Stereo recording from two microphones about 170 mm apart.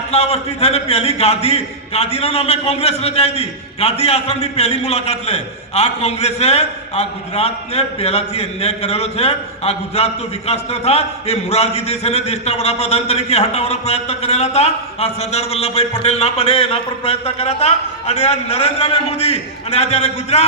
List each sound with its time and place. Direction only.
0.1 s a man's voice: 40° left (ahead or behind)